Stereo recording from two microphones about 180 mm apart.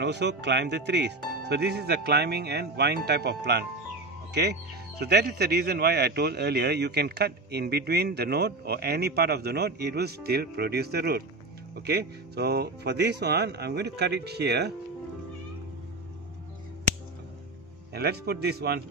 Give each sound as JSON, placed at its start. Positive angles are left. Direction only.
{"t": 0.0, "sound": "speech", "side_deg": -70}
{"t": 17.9, "sound": "speech", "side_deg": -60}